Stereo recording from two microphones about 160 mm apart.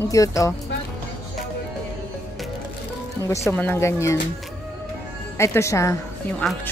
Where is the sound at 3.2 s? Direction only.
20° left (ahead or behind).